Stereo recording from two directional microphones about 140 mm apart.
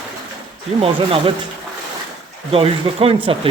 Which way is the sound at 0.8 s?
40° right (ahead or behind).